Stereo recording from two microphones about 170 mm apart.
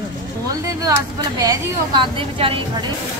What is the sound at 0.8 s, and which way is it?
A woman's voice, 20° right (ahead or behind).